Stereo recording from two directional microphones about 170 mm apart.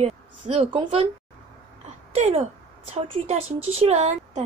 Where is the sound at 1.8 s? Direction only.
40° right (ahead or behind).